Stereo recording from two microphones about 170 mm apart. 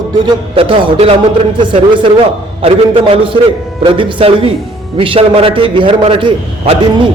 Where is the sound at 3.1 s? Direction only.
30° right (ahead or behind).